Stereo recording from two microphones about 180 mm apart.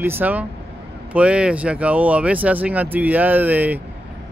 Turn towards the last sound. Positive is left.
turn(degrees=-10)  # may be behind; listen again after turning